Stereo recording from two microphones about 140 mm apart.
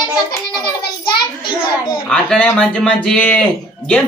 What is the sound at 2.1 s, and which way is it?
Speech, 5° left (ahead or behind).